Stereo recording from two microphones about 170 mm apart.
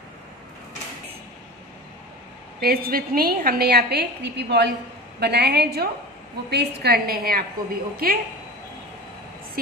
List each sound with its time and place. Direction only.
2.6 s a woman's voice: 60° right (ahead or behind)